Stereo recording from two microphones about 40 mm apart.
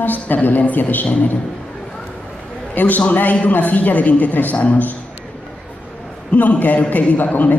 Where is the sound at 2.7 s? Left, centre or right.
Left.